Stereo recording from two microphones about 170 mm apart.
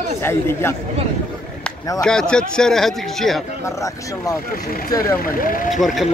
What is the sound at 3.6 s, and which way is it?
Speech, 20° left (ahead or behind).